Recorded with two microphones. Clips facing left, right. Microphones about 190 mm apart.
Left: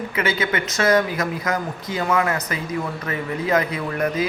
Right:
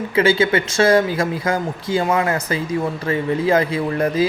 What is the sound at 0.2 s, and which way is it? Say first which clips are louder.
Speech: right 8 dB; 30° right (ahead or behind).